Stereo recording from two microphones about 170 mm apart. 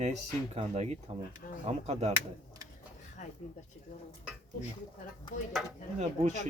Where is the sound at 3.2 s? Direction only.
45° left (ahead or behind).